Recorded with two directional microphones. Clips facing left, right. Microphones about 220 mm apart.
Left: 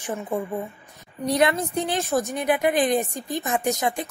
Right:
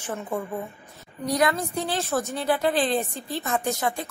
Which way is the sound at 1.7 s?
15° left (ahead or behind).